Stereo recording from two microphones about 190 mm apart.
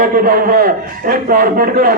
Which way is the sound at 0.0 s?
50° right (ahead or behind).